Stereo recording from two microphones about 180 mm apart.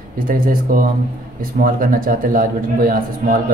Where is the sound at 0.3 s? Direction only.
50° right (ahead or behind).